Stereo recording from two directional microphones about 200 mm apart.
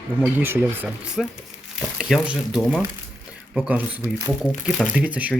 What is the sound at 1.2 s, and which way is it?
Speech, centre (ahead or behind).